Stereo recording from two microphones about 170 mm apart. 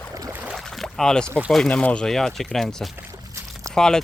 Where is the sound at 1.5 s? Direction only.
5° left (ahead or behind).